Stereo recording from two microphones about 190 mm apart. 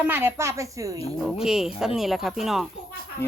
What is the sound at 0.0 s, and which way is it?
A woman's voice, 10° right (ahead or behind).